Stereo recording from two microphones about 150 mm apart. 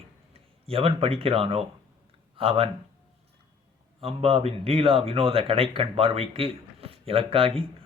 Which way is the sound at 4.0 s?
40° right (ahead or behind).